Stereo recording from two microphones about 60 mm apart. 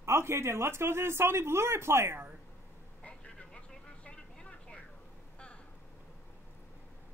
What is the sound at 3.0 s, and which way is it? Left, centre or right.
Vehicle, centre.